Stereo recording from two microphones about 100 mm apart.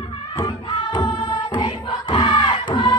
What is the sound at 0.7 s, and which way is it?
Music, 50° left (ahead or behind).